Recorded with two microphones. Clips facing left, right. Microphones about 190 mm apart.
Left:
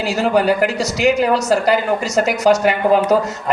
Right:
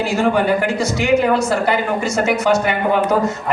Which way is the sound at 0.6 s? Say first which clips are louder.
Left 1 dB; 40° left (ahead or behind).